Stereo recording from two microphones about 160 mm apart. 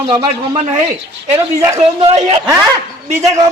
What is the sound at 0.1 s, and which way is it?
Speech, 35° right (ahead or behind).